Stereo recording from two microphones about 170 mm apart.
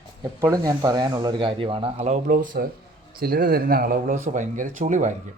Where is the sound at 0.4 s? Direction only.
20° right (ahead or behind).